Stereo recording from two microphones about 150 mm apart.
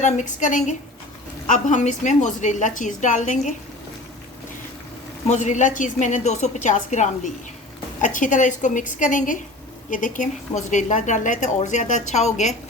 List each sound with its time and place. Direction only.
0.0 s a woman's voice: 55° left (ahead or behind)
5.3 s a woman's voice: 55° left (ahead or behind)